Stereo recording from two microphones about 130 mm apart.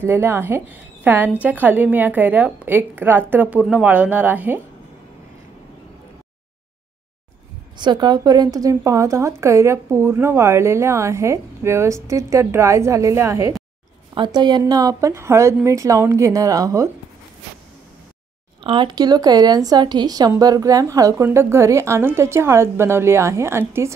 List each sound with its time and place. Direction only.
0.0 s a woman's voice: 20° right (ahead or behind)
7.7 s speech: 35° right (ahead or behind)
14.1 s a woman's voice: 35° right (ahead or behind)
18.6 s speech: 40° right (ahead or behind); by 23.9 s 20° right (ahead or behind)